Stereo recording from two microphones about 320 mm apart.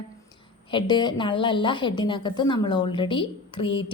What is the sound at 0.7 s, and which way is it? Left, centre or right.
A woman's voice, centre.